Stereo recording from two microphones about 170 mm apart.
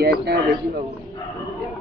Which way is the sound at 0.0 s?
70° right (ahead or behind).